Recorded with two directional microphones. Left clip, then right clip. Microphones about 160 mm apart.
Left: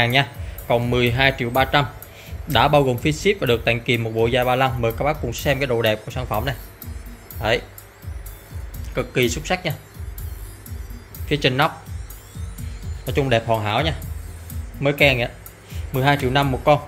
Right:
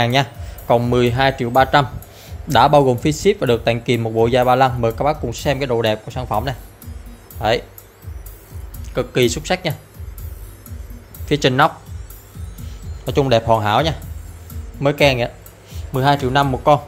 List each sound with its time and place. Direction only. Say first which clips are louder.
0.0 s speech: right 1 dB; 35° right (ahead or behind)
8.9 s speech: right 4 dB; 30° right (ahead or behind)
11.2 s speech: right 4 dB; 40° right (ahead or behind)
13.0 s speech: right 4 dB; 30° right (ahead or behind)
14.8 s speech: right 2 dB; 30° right (ahead or behind)